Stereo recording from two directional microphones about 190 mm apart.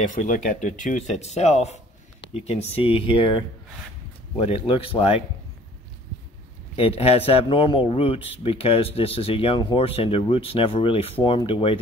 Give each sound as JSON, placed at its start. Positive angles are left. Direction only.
{"t": 0.1, "sound": "speech", "side_deg": 45}
{"t": 4.5, "sound": "speech", "side_deg": 30}
{"t": 6.8, "sound": "speech", "side_deg": 30}